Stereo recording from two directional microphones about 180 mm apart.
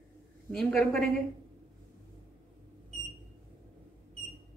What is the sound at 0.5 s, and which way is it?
Speech, 5° left (ahead or behind).